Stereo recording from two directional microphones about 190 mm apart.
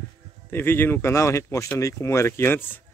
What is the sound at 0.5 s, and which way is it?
Speech, 10° left (ahead or behind).